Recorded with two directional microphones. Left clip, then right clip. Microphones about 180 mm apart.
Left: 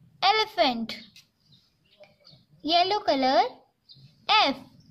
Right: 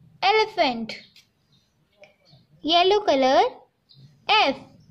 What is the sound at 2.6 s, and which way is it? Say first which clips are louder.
A woman's voice: right 4 dB; 5° right (ahead or behind).